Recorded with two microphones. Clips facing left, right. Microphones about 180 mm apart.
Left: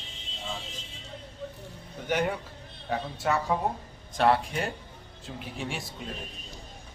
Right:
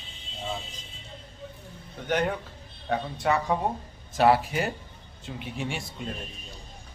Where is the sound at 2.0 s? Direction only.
10° left (ahead or behind).